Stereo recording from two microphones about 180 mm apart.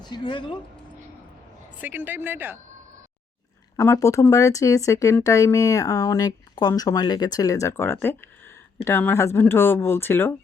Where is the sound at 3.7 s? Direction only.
15° left (ahead or behind).